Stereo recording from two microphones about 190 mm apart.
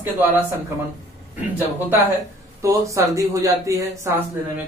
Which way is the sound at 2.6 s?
15° right (ahead or behind).